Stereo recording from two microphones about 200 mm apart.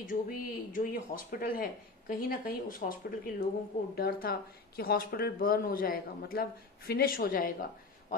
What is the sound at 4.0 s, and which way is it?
Speech, 50° left (ahead or behind).